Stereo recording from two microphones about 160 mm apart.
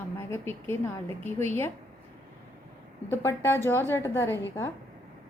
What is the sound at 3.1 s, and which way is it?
A woman's voice, 15° left (ahead or behind).